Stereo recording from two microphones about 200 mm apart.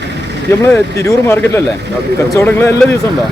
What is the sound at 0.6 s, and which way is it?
Speech, 10° left (ahead or behind).